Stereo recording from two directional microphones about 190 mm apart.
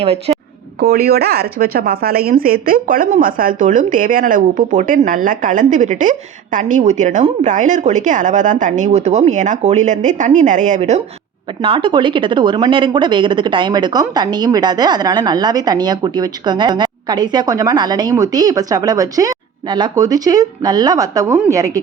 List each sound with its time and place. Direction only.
0.0 s speech: 30° right (ahead or behind)
0.8 s speech: 55° right (ahead or behind); by 21.7 s 15° right (ahead or behind)